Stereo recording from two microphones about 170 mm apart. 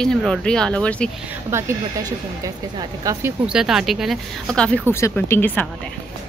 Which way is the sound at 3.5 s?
5° right (ahead or behind).